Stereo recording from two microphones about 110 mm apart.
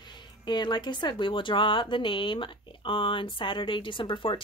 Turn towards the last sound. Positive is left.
turn(degrees=50)  # may be behind; listen again after turning